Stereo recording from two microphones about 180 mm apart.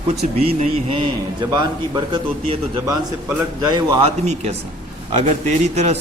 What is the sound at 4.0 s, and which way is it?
Speech, 35° right (ahead or behind).